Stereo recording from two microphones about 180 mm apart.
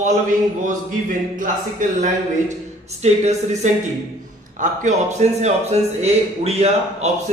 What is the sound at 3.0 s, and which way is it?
Speech, 40° right (ahead or behind).